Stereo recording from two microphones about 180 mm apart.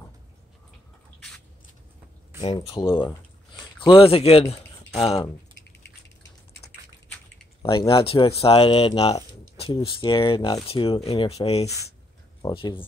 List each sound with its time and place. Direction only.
2.4 s speech: 30° left (ahead or behind)
7.6 s speech: 25° left (ahead or behind)